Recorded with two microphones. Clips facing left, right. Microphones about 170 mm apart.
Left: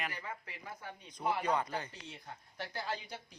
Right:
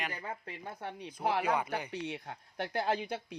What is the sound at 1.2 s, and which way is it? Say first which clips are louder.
Speech: right 3 dB; 80° right.